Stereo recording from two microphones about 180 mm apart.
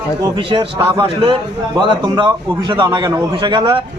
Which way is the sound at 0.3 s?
30° right (ahead or behind).